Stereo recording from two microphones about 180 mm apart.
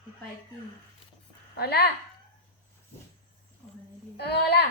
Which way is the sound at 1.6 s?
60° left (ahead or behind).